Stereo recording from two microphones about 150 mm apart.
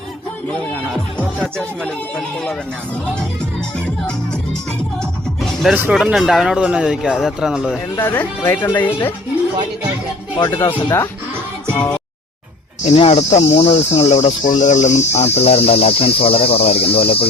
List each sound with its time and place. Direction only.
0.9 s a man's voice: centre (ahead or behind)
5.7 s speech: 10° right (ahead or behind)
6.0 s a man's voice: centre (ahead or behind)
7.9 s speech: 15° left (ahead or behind)
10.3 s speech: 30° left (ahead or behind)
12.8 s speech: 40° left (ahead or behind)